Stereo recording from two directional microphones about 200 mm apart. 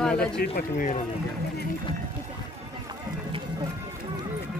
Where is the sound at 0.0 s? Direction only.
5° left (ahead or behind).